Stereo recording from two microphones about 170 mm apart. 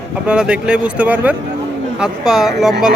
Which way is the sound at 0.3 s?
5° right (ahead or behind).